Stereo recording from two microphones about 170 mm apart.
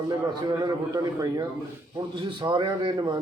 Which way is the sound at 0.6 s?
20° right (ahead or behind).